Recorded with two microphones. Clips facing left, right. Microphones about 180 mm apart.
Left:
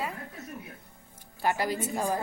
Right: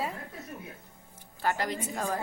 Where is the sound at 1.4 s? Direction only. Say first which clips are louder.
Left 2 dB; 10° left (ahead or behind).